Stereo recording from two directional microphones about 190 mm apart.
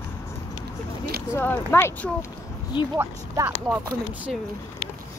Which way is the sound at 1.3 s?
10° left (ahead or behind).